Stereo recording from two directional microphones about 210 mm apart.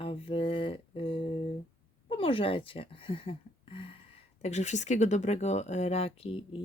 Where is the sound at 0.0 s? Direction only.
25° left (ahead or behind).